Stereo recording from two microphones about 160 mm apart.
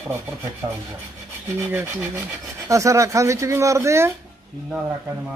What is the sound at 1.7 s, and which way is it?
Speech, 10° right (ahead or behind).